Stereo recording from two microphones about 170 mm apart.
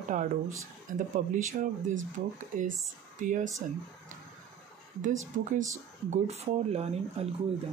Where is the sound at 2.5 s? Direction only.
50° right (ahead or behind).